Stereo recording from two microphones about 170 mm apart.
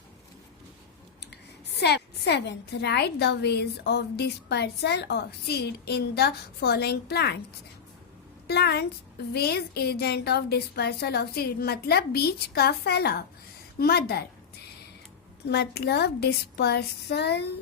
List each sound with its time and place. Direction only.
1.7 s a woman's voice: 75° left (ahead or behind)
8.4 s a woman's voice: 70° left (ahead or behind)
15.4 s a woman's voice: 70° left (ahead or behind)